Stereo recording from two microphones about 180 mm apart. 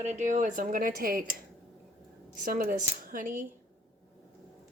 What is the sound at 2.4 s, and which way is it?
Speech, 50° right (ahead or behind).